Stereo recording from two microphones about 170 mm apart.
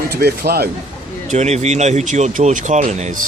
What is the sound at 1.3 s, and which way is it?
Speech, 40° right (ahead or behind).